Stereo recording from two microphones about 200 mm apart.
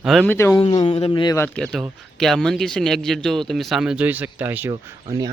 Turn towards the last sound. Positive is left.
turn(degrees=-20)  # may be behind; listen again after turning